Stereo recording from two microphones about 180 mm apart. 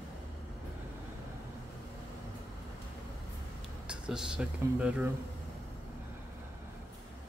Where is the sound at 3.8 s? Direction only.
5° right (ahead or behind).